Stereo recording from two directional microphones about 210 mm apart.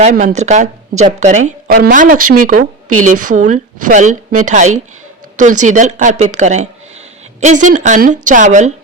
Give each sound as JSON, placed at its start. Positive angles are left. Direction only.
{"t": 0.0, "sound": "a woman's voice", "side_deg": -35}